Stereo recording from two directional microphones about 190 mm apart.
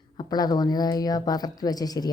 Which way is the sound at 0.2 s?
20° left (ahead or behind).